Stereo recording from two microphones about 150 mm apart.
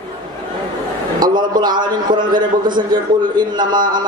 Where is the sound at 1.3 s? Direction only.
30° right (ahead or behind).